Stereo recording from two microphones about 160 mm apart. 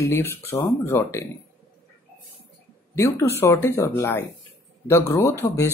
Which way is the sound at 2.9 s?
15° left (ahead or behind).